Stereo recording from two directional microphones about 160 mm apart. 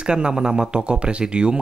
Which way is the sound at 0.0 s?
5° right (ahead or behind).